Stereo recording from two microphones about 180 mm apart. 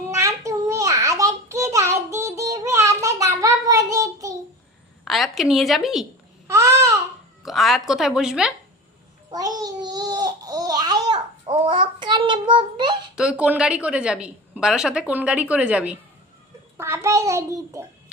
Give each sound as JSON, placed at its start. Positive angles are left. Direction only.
{"t": 0.1, "sound": "a sound", "side_deg": -15}
{"t": 5.0, "sound": "a woman's voice", "side_deg": 0}
{"t": 6.5, "sound": "babbling", "side_deg": -15}
{"t": 7.4, "sound": "a woman's voice", "side_deg": 0}
{"t": 9.3, "sound": "babbling", "side_deg": -20}
{"t": 13.1, "sound": "a woman's voice", "side_deg": -5}